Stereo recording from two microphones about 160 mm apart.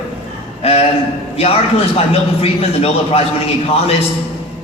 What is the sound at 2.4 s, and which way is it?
A man's voice, 40° left (ahead or behind).